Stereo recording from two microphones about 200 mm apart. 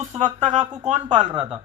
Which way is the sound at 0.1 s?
40° right (ahead or behind).